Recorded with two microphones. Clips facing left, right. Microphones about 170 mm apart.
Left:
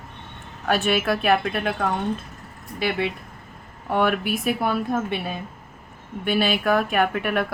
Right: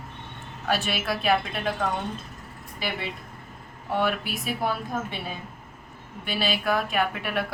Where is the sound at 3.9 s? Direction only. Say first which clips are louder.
Left 5 dB; 55° left (ahead or behind).